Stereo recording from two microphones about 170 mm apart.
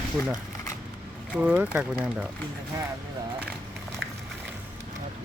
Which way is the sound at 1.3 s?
10° right (ahead or behind).